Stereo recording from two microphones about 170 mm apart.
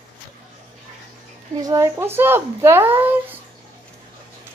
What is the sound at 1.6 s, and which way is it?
A woman's voice, 20° right (ahead or behind).